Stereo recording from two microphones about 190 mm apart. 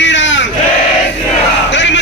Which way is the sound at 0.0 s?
70° left (ahead or behind).